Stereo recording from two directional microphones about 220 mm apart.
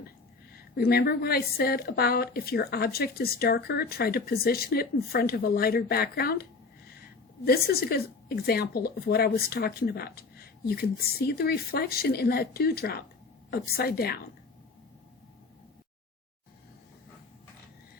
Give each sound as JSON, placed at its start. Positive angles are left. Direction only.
{"t": 0.5, "sound": "a woman's voice", "side_deg": 45}